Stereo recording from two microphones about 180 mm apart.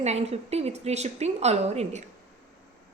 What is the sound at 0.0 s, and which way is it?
A woman's voice, 35° right (ahead or behind).